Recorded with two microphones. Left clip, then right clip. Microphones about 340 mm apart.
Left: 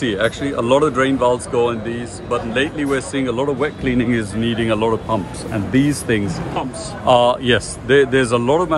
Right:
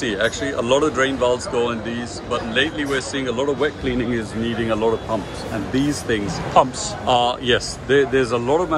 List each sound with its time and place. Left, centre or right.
0.0 s speech: centre
6.5 s a man's voice: centre
7.1 s speech: centre